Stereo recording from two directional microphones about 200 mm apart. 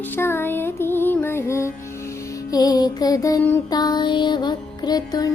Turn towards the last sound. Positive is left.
turn(degrees=20)  # may be behind; listen again after turning